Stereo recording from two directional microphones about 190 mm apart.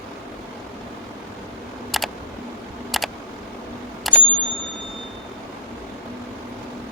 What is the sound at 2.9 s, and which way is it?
Camera, centre (ahead or behind).